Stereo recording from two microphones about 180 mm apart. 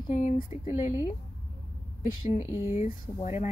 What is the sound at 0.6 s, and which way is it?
Speech, 10° right (ahead or behind).